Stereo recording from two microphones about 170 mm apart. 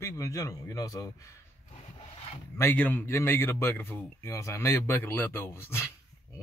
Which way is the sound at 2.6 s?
10° left (ahead or behind).